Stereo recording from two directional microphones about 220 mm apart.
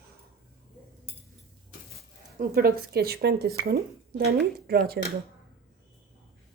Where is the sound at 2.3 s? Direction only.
45° right (ahead or behind).